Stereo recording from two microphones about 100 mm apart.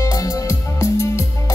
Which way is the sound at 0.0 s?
35° left (ahead or behind).